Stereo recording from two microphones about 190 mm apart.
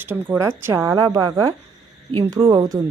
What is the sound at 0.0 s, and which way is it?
A woman's voice, 10° right (ahead or behind).